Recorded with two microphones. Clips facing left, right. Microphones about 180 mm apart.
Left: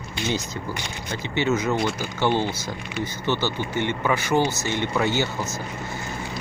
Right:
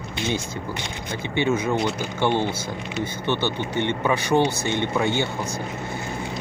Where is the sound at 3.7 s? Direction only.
20° right (ahead or behind).